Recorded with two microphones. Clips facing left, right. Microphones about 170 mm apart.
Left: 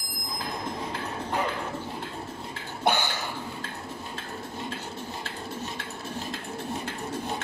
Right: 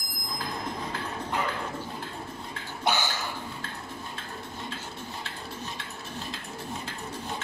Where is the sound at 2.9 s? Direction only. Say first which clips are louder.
Left 3 dB; 55° left (ahead or behind).